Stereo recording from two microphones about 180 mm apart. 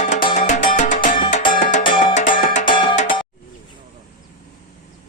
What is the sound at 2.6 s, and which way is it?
Music, 25° left (ahead or behind).